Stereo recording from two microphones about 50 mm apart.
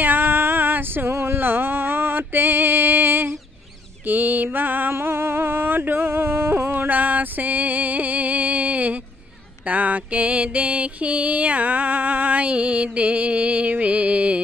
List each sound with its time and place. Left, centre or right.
0.0 s a sound: right
4.0 s mantra: right
4.9 s music: right